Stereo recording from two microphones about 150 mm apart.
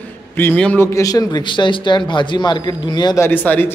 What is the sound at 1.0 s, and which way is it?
A man's voice, 25° left (ahead or behind).